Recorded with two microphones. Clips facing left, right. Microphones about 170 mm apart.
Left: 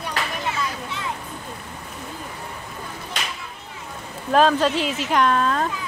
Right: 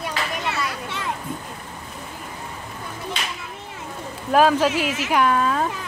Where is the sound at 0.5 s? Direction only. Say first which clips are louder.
Even; 65° right (ahead or behind).